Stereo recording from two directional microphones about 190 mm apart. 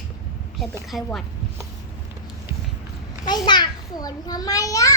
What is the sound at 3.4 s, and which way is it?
A child's voice, 20° left (ahead or behind).